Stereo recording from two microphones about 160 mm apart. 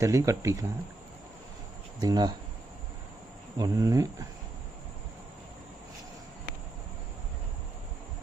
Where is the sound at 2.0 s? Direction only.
25° right (ahead or behind).